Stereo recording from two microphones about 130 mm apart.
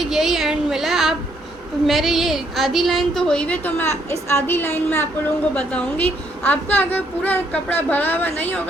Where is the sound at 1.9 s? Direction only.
Centre (ahead or behind).